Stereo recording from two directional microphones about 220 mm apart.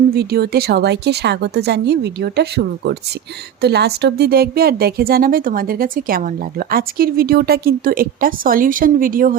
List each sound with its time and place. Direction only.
0.1 s a woman's voice: 45° right (ahead or behind)